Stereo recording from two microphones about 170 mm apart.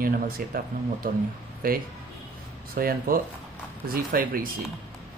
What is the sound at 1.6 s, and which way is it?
Speech, 55° right (ahead or behind).